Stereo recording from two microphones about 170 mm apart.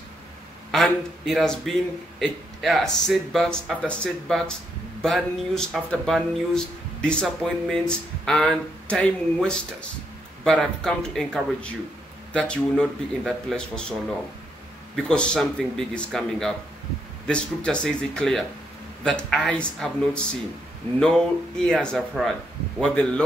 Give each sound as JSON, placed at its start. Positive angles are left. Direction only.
{"t": 0.7, "sound": "speech", "side_deg": 0}